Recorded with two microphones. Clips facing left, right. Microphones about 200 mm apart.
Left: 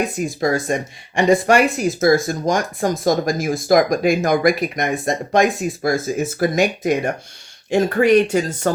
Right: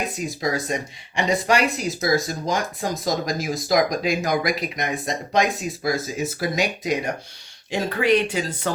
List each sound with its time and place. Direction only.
0.2 s speech: 50° left (ahead or behind)